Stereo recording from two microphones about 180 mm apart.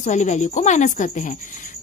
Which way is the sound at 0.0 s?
40° left (ahead or behind).